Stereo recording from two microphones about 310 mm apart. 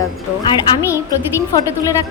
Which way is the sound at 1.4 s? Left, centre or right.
Centre.